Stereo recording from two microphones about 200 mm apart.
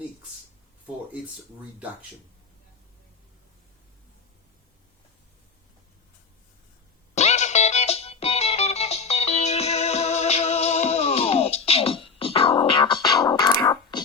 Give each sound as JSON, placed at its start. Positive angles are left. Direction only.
{"t": 7.2, "sound": "music", "side_deg": 35}